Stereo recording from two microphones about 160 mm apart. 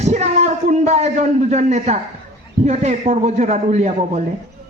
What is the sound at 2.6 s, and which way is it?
A man's voice, 45° right (ahead or behind).